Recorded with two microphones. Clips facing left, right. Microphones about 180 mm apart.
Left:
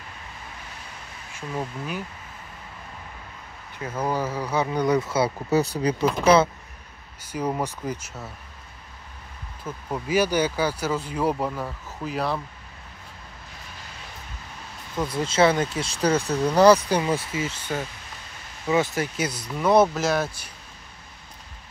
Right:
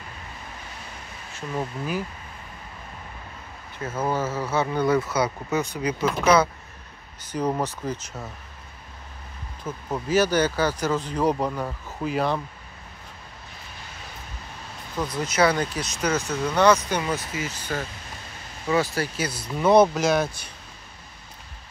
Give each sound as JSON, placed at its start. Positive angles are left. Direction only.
{"t": 1.6, "sound": "speech", "side_deg": -5}
{"t": 4.1, "sound": "speech", "side_deg": 15}
{"t": 7.2, "sound": "speech", "side_deg": 10}
{"t": 9.6, "sound": "speech", "side_deg": -10}
{"t": 10.0, "sound": "speech", "side_deg": 10}
{"t": 15.0, "sound": "speech", "side_deg": 25}
{"t": 19.4, "sound": "speech", "side_deg": 0}